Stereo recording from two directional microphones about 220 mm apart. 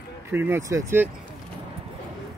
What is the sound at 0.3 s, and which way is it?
Speech, 10° right (ahead or behind).